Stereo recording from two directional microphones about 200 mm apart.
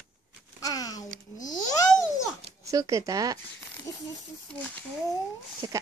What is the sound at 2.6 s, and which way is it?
Speech, 15° right (ahead or behind).